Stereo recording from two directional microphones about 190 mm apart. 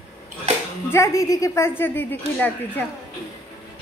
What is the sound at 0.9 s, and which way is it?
A woman's voice, 15° left (ahead or behind).